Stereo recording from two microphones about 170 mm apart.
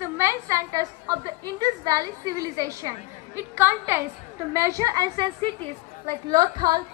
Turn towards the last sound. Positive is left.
turn(degrees=-25)  # may be behind; listen again after turning